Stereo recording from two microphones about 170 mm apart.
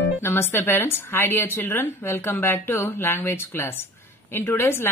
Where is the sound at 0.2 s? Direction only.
15° left (ahead or behind).